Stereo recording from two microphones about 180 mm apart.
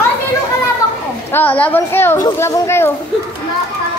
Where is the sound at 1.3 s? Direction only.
10° left (ahead or behind).